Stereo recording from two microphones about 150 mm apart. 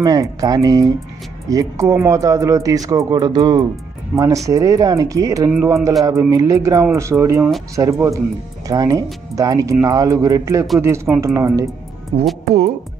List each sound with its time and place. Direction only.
0.0 s speech: 25° right (ahead or behind)
12.1 s speech: 30° right (ahead or behind)